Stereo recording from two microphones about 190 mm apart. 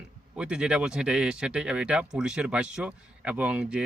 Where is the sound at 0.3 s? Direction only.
5° right (ahead or behind).